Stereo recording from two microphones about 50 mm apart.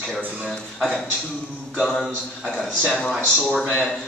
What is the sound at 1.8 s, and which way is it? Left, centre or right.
Speech, centre.